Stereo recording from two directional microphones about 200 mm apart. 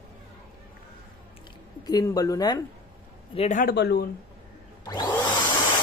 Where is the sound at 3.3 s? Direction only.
35° left (ahead or behind); by 4.0 s 55° left (ahead or behind).